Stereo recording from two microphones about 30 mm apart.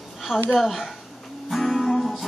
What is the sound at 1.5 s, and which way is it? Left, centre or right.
Music, centre.